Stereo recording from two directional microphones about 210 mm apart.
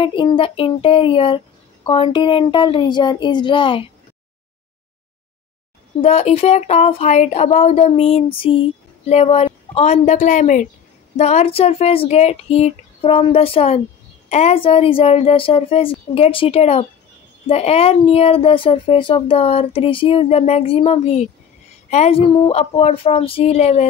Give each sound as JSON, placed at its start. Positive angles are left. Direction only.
{"t": 0.0, "sound": "speech", "side_deg": 25}
{"t": 5.9, "sound": "speech", "side_deg": 30}